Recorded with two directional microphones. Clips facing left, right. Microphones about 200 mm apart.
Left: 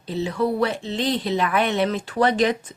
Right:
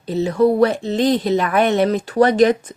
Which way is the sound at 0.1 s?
45° right (ahead or behind).